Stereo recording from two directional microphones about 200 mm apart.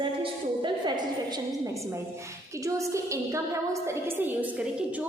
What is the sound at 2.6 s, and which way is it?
A woman's voice, 15° right (ahead or behind).